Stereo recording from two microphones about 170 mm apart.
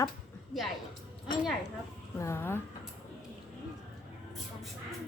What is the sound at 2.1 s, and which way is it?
Speech, 15° left (ahead or behind).